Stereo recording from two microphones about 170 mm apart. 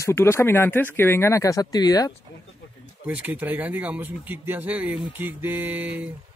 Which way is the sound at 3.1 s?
10° right (ahead or behind).